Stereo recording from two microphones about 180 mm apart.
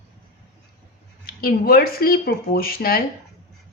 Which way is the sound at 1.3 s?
55° left (ahead or behind).